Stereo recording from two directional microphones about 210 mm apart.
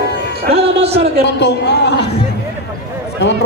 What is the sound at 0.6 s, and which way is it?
Speech, 30° right (ahead or behind).